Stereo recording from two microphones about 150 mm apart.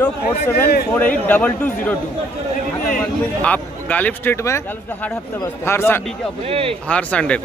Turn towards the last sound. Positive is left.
turn(degrees=10)  # may be behind; listen again after turning